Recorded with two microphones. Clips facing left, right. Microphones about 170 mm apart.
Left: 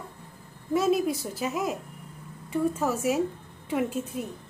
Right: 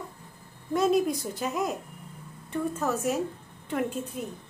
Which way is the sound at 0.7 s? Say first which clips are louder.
Even; 5° left (ahead or behind).